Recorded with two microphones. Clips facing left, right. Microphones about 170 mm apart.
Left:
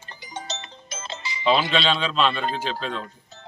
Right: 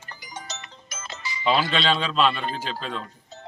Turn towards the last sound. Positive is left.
turn(degrees=-5)  # may be behind; listen again after turning